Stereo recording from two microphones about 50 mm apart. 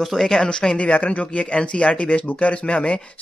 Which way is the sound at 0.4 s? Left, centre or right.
Centre.